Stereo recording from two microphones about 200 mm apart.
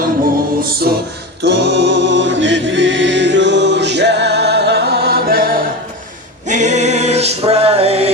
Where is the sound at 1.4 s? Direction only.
60° right (ahead or behind).